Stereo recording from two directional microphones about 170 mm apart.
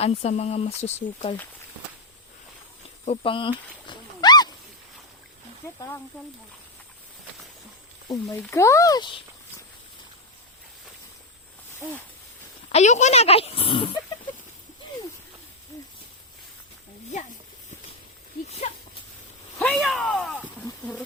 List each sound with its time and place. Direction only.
0.0 s speech: 40° left (ahead or behind)
3.1 s a sound: 30° left (ahead or behind)
8.0 s speech: 20° left (ahead or behind)
12.6 s speech: 45° left (ahead or behind)
18.4 s speech: 40° left (ahead or behind)
19.5 s a sound: 5° left (ahead or behind)